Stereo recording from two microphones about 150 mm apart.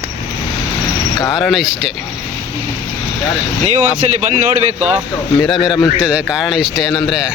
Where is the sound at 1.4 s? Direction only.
Centre (ahead or behind).